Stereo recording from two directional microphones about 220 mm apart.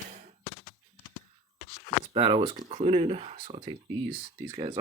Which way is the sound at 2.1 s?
25° right (ahead or behind).